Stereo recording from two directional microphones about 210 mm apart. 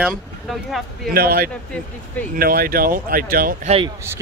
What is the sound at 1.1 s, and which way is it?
Speech, 45° right (ahead or behind).